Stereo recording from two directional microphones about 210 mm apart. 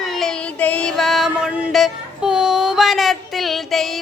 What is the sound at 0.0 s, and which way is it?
Child singing, centre (ahead or behind).